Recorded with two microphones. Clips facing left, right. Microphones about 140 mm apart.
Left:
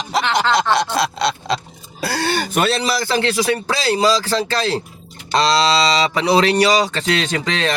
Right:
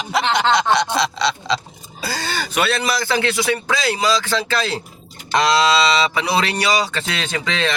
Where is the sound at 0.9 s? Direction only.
50° left (ahead or behind).